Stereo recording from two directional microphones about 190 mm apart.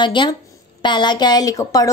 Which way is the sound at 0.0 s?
25° left (ahead or behind).